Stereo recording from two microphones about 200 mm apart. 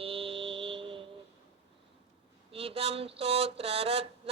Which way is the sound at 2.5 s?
30° right (ahead or behind).